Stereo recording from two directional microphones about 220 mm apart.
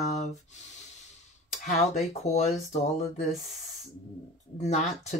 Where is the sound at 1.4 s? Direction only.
30° left (ahead or behind).